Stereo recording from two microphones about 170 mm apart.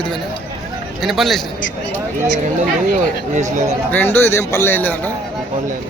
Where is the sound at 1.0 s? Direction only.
Centre (ahead or behind).